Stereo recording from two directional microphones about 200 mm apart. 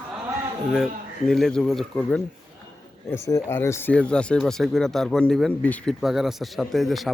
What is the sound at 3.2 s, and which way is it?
Speech, 15° left (ahead or behind).